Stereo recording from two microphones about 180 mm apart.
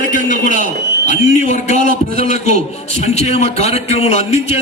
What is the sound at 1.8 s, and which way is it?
Speech, 50° right (ahead or behind).